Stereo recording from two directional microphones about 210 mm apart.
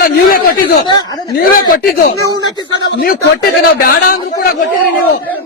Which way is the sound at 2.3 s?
20° left (ahead or behind).